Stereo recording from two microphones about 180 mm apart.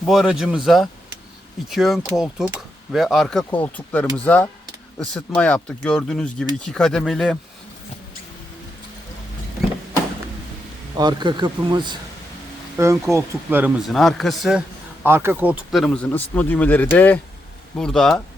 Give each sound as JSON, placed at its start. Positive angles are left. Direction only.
{"t": 0.0, "sound": "speech", "side_deg": 0}
{"t": 10.9, "sound": "speech", "side_deg": -25}
{"t": 15.0, "sound": "speech", "side_deg": -10}